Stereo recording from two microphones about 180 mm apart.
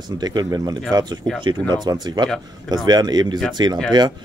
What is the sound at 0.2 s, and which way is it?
Speech, 20° right (ahead or behind).